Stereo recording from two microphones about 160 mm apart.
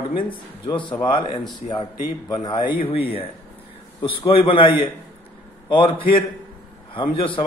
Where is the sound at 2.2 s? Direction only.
25° left (ahead or behind).